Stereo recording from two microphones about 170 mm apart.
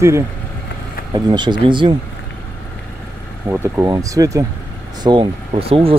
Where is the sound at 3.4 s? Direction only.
15° right (ahead or behind); by 5.9 s 35° right (ahead or behind).